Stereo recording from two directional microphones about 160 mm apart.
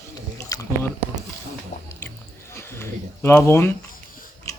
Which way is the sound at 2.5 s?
15° left (ahead or behind).